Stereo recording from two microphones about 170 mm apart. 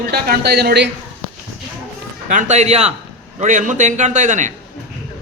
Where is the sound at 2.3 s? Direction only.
45° right (ahead or behind).